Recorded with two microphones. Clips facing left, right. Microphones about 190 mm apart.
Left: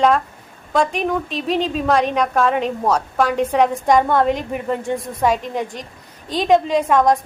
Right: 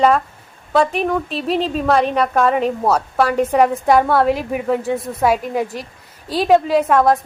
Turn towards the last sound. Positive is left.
turn(degrees=-5)  # may be behind; listen again after turning